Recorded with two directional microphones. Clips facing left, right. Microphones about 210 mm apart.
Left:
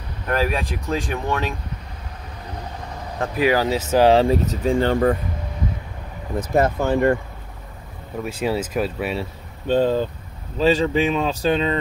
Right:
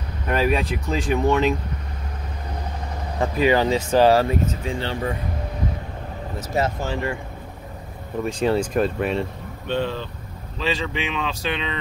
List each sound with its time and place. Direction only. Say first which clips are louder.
0.3 s speech: right 1 dB; centre (ahead or behind)
3.2 s speech: right 1 dB; 5° left (ahead or behind)
4.1 s speech: left 3 dB; 25° left (ahead or behind)
4.5 s speech: left 7 dB; 45° left (ahead or behind)
6.5 s speech: left 5 dB; 55° left (ahead or behind)
8.2 s speech: right 2 dB; 5° left (ahead or behind)
9.7 s speech: left 7 dB; 40° left (ahead or behind)